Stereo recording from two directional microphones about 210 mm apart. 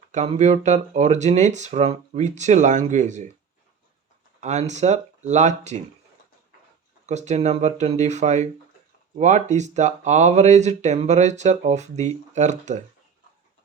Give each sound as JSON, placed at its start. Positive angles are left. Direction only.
{"t": 0.1, "sound": "speech", "side_deg": -35}
{"t": 4.4, "sound": "speech", "side_deg": -35}
{"t": 7.0, "sound": "speech", "side_deg": -35}